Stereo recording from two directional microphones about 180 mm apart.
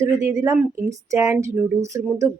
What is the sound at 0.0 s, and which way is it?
A woman's voice, 20° right (ahead or behind).